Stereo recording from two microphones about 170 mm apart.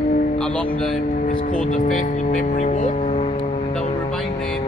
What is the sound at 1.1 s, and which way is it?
Speech, 55° left (ahead or behind).